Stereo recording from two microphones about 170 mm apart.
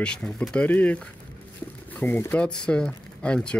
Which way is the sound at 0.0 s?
5° left (ahead or behind).